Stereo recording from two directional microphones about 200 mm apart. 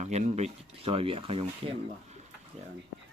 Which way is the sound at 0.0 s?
35° right (ahead or behind).